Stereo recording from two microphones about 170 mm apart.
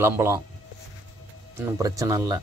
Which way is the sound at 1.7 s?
20° right (ahead or behind).